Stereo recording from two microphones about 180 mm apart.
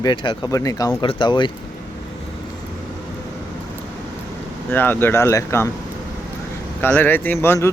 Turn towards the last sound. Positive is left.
turn(degrees=15)  # may be behind; listen again after turning